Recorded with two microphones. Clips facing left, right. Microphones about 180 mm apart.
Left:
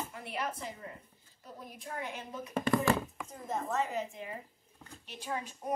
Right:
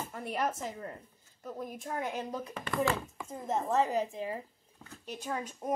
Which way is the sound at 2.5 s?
40° left (ahead or behind).